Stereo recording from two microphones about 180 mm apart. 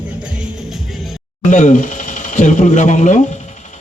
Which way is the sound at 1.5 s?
45° left (ahead or behind).